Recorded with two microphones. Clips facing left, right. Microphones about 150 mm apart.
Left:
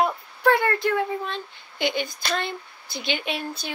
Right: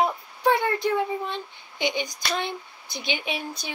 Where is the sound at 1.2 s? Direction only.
15° right (ahead or behind).